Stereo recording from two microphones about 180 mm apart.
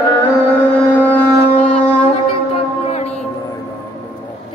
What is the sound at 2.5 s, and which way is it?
Music, 35° left (ahead or behind).